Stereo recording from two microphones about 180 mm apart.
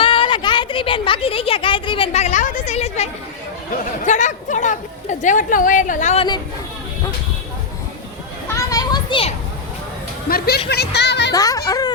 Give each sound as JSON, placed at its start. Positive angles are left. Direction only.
{"t": 0.0, "sound": "speech", "side_deg": 30}
{"t": 8.5, "sound": "children playing", "side_deg": 20}
{"t": 10.2, "sound": "speech", "side_deg": 60}
{"t": 11.3, "sound": "speech", "side_deg": 20}